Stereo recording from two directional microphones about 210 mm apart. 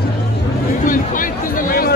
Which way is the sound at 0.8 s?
40° left (ahead or behind).